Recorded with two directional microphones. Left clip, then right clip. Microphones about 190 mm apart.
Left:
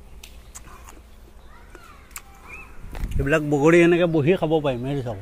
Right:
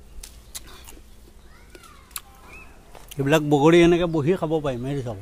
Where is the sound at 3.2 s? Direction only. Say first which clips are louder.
Right 1 dB; 30° right (ahead or behind).